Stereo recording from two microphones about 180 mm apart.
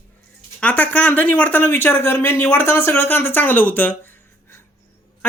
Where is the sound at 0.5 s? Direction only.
10° left (ahead or behind).